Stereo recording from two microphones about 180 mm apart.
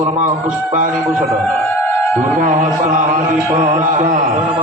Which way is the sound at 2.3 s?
45° right (ahead or behind).